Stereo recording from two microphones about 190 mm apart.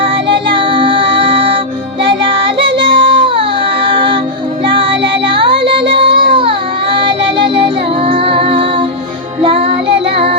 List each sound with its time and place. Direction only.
0.0 s music: 25° right (ahead or behind)